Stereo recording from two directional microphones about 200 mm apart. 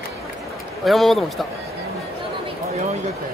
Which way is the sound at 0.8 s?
Centre (ahead or behind).